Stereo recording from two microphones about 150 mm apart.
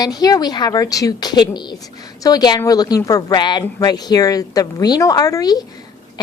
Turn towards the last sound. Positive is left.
turn(degrees=25)  # may be behind; listen again after turning